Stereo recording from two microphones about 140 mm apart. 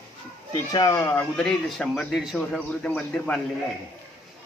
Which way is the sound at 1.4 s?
5° left (ahead or behind).